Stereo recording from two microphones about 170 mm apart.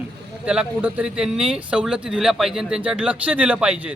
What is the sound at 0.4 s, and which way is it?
Speech, 5° right (ahead or behind).